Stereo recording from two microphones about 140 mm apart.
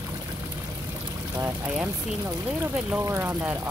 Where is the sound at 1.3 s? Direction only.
15° right (ahead or behind).